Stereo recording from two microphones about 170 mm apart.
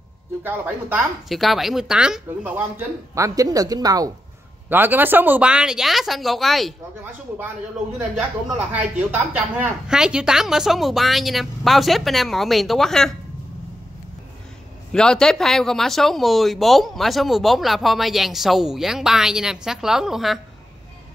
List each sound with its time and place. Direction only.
0.4 s speech: 10° right (ahead or behind)
1.3 s speech: centre (ahead or behind)
3.2 s speech: 20° right (ahead or behind)
4.6 s speech: 10° right (ahead or behind)
8.5 s speech: 10° right (ahead or behind)
14.9 s speech: 5° left (ahead or behind)